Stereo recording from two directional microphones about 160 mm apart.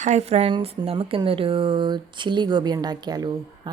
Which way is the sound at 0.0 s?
45° right (ahead or behind).